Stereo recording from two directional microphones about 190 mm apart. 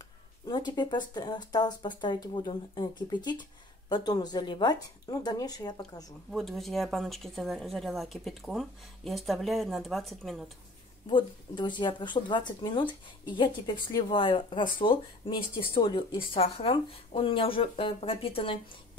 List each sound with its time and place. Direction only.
0.5 s speech: 25° left (ahead or behind)
6.3 s a woman's voice: centre (ahead or behind)
11.1 s speech: 25° left (ahead or behind)